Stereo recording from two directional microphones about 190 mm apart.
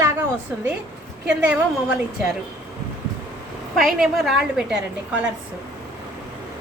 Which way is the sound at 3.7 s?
Centre (ahead or behind).